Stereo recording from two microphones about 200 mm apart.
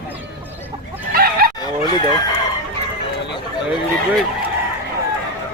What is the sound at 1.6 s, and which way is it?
Chicken, 20° left (ahead or behind).